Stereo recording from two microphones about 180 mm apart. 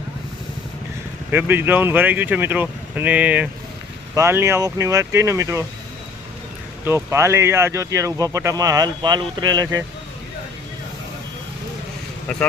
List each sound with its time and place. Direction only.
1.3 s speech: 10° right (ahead or behind)
6.8 s speech: 15° right (ahead or behind)